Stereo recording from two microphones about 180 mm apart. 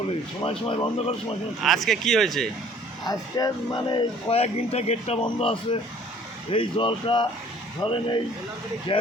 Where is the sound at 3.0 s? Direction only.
25° left (ahead or behind).